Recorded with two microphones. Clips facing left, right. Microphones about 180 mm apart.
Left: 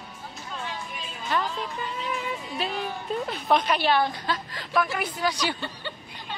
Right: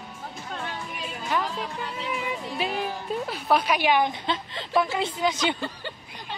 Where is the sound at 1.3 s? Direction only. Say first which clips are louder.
Even; 10° right (ahead or behind).